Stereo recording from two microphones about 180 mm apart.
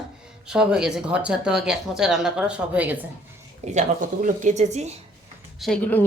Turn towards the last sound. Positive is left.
turn(degrees=10)  # may be behind; listen again after turning